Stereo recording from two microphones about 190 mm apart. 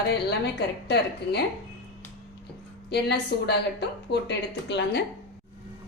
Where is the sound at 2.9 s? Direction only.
60° left (ahead or behind).